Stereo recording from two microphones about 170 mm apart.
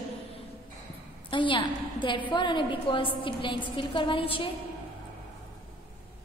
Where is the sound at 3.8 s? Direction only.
30° left (ahead or behind).